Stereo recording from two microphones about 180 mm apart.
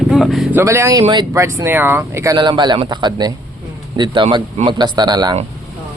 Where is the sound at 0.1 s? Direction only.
Centre (ahead or behind).